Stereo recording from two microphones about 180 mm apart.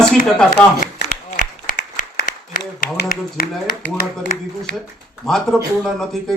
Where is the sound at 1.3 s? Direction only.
70° left (ahead or behind).